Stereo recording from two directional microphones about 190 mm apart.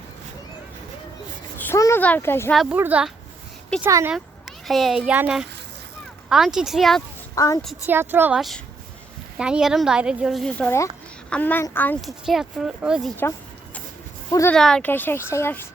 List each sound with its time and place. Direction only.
1.5 s a child's voice: 10° left (ahead or behind)
2.6 s speech: 5° right (ahead or behind)
4.1 s a child's voice: centre (ahead or behind)
7.3 s speech: 20° left (ahead or behind)
7.9 s speech: 10° right (ahead or behind); by 12.1 s 10° left (ahead or behind)
12.2 s speech: centre (ahead or behind)
14.5 s speech: 5° left (ahead or behind)